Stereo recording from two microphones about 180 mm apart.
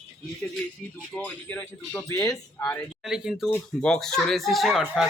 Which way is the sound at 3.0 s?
5° right (ahead or behind).